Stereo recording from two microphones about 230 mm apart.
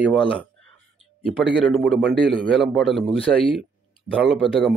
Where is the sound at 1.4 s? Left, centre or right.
Centre.